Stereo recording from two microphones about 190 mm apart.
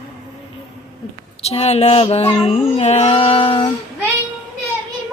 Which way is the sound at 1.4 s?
35° left (ahead or behind).